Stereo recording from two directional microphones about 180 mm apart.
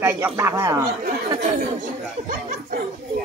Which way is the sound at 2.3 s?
50° right (ahead or behind).